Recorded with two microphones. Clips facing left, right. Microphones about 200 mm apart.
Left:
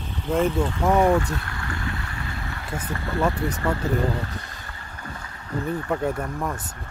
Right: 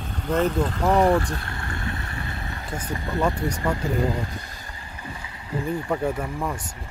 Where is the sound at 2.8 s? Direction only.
15° right (ahead or behind).